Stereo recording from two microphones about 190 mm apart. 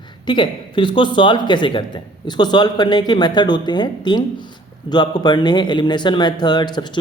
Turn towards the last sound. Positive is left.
turn(degrees=25)  # may be behind; listen again after turning